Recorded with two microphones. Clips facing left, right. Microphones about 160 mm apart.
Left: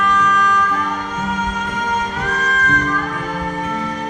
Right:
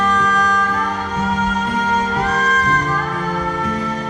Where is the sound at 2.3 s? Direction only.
35° right (ahead or behind).